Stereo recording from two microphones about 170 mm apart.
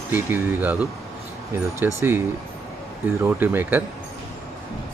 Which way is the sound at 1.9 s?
15° right (ahead or behind).